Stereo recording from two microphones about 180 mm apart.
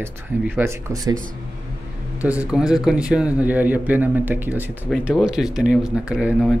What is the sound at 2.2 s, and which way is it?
A man's voice, 5° right (ahead or behind).